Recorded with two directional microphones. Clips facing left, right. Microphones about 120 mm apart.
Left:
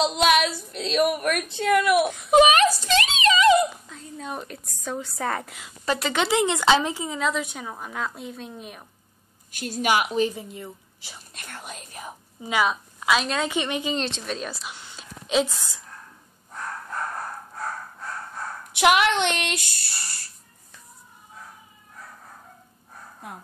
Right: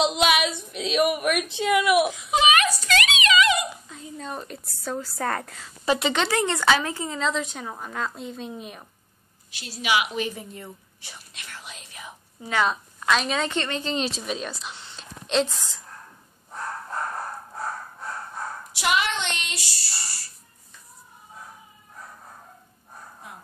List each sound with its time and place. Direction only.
0.0 s a sound: 5° right (ahead or behind)
2.3 s a sound: 35° left (ahead or behind)
4.2 s a woman's voice: 5° left (ahead or behind)
6.1 s a woman's voice: 15° left (ahead or behind)
6.9 s a woman's voice: 5° left (ahead or behind)
9.5 s speech: 50° left (ahead or behind)
10.3 s speech: 15° left (ahead or behind)
11.3 s speech: 45° left (ahead or behind)
12.4 s a woman's voice: 10° left (ahead or behind)
13.9 s a woman's voice: 5° right (ahead or behind)
18.8 s child singing: 60° left (ahead or behind)